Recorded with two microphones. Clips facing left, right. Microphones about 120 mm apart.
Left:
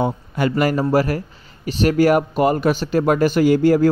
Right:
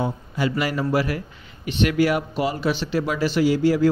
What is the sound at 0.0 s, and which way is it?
Speech, 55° left (ahead or behind).